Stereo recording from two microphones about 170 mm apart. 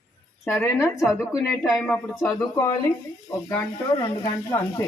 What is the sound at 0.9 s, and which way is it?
Speech, centre (ahead or behind).